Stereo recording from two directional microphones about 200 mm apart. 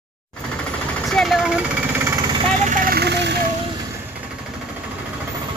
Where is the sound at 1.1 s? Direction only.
Centre (ahead or behind).